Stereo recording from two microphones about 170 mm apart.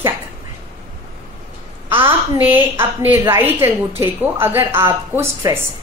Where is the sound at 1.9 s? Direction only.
10° right (ahead or behind).